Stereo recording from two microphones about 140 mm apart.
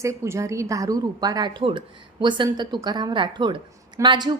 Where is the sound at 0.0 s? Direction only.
20° right (ahead or behind).